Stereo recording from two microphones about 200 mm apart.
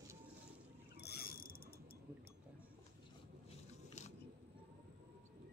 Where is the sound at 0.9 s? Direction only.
50° left (ahead or behind).